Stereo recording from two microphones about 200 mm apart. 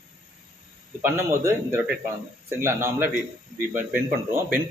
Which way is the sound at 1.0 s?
15° right (ahead or behind).